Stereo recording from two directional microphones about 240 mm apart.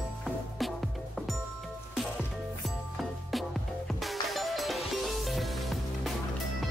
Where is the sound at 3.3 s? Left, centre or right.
Centre.